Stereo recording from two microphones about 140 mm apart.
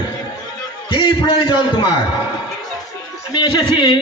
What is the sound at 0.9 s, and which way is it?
Speech, 35° left (ahead or behind).